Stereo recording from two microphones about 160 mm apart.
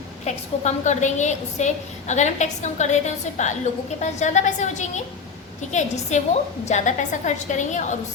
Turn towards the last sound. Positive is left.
turn(degrees=50)  # may be behind; listen again after turning